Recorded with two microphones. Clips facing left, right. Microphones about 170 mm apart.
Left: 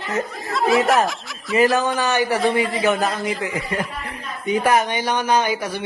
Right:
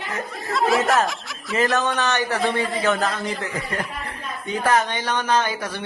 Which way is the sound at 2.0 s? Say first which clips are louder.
Left 3 dB; 10° left (ahead or behind).